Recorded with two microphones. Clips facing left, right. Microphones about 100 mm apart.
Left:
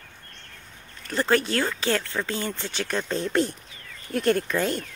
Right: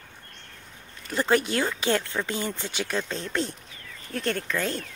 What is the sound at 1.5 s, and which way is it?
Speech, 15° right (ahead or behind).